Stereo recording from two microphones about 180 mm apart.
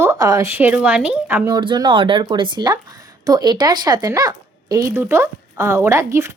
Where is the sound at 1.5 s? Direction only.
25° right (ahead or behind).